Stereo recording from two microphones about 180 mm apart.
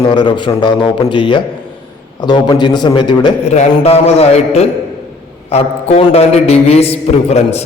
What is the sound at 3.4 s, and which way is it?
A man's voice, 40° left (ahead or behind).